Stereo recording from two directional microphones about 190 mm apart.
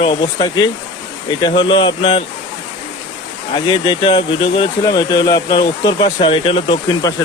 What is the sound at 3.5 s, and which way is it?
Speech, 25° left (ahead or behind).